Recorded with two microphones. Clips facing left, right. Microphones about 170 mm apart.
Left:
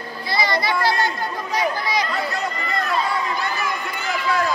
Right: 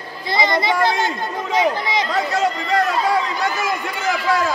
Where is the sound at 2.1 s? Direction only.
90° right.